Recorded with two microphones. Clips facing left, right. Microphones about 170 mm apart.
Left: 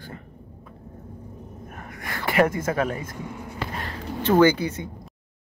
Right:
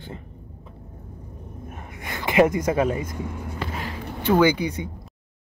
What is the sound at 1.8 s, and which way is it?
Speech, 20° right (ahead or behind).